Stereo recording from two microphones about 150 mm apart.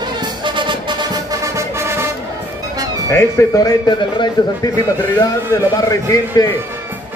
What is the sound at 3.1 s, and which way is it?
A man's voice, 15° left (ahead or behind).